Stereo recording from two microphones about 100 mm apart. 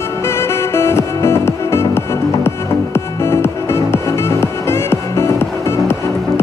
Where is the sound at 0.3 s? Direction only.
25° left (ahead or behind).